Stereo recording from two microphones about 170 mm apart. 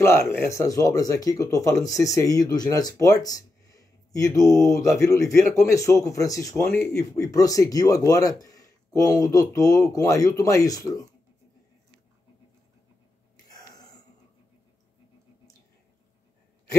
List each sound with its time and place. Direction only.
0.0 s speech: 15° left (ahead or behind)